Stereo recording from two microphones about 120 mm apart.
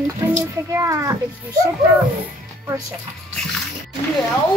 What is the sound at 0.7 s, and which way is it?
Speech, 25° right (ahead or behind).